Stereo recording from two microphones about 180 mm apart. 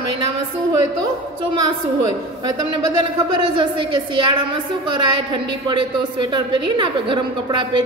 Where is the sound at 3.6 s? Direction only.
25° right (ahead or behind).